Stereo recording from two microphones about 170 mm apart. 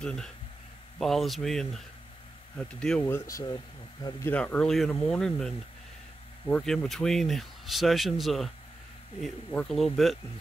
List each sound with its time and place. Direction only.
0.0 s speech: 5° left (ahead or behind)